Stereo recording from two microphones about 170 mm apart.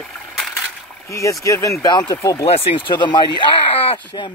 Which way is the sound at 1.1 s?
20° left (ahead or behind).